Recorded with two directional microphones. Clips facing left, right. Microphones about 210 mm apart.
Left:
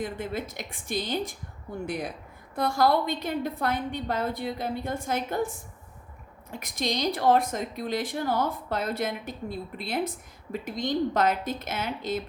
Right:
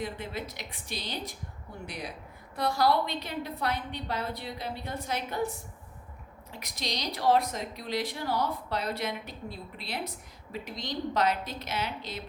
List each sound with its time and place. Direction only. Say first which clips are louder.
0.0 s speech: left 4 dB; 50° left (ahead or behind)